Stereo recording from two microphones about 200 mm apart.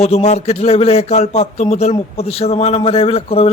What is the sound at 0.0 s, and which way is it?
A man's voice, 35° left (ahead or behind).